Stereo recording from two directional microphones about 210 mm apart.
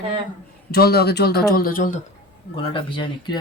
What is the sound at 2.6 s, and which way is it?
Speech, 25° left (ahead or behind).